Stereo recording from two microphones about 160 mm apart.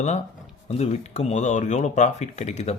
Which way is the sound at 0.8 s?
45° left (ahead or behind).